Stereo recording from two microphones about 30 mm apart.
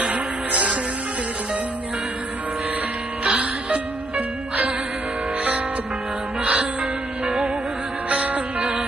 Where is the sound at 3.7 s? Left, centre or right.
Right.